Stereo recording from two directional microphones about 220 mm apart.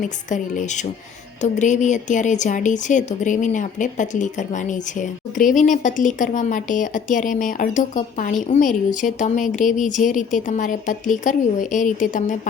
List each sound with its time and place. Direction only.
0.3 s speech: 35° left (ahead or behind)